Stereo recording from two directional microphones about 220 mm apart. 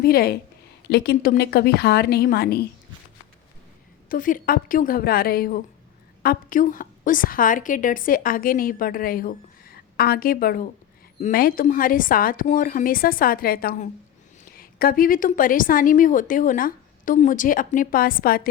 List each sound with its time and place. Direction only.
0.0 s a woman's voice: 45° left (ahead or behind)
4.1 s a woman's voice: 40° left (ahead or behind)